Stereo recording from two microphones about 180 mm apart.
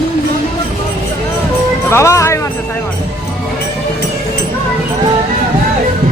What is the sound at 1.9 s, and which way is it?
Music, 15° left (ahead or behind).